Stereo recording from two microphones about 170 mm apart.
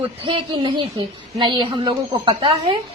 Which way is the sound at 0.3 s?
30° right (ahead or behind).